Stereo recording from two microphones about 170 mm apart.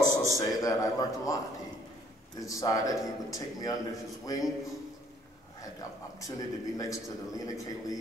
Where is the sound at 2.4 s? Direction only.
20° left (ahead or behind).